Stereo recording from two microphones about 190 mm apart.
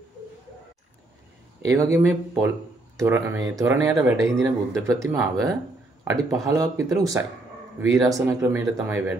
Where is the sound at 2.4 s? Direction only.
15° right (ahead or behind).